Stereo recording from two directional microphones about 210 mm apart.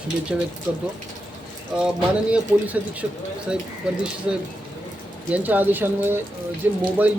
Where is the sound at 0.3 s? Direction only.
5° right (ahead or behind).